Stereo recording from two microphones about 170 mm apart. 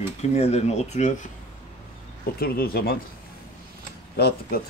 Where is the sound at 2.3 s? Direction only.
60° left (ahead or behind).